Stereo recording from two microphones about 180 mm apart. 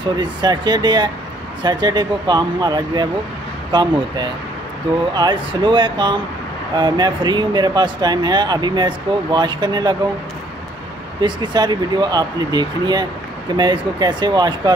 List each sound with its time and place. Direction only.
0.0 s speech: 25° right (ahead or behind)
11.1 s speech: 25° right (ahead or behind)